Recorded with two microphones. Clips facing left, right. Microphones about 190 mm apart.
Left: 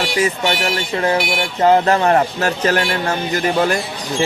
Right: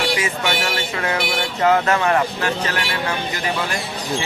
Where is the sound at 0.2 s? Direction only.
35° left (ahead or behind).